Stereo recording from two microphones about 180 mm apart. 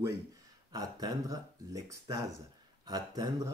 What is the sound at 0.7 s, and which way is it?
Speech, 20° right (ahead or behind).